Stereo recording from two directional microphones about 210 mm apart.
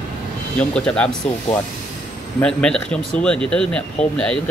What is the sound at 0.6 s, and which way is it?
Speech, 5° left (ahead or behind).